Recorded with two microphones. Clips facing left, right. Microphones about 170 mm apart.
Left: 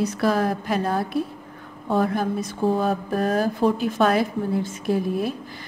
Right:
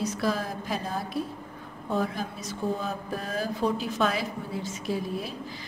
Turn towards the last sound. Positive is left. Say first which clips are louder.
# left 8 dB
turn(degrees=55)  # may be behind; listen again after turning